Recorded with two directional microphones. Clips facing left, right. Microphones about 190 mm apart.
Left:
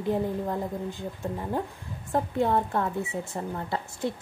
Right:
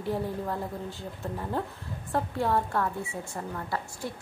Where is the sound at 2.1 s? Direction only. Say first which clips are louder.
Left 3 dB; 20° left (ahead or behind).